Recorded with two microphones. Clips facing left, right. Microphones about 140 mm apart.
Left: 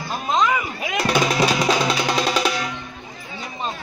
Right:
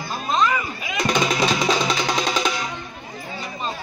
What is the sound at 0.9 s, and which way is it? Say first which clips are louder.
Music: left 2 dB; 5° left (ahead or behind).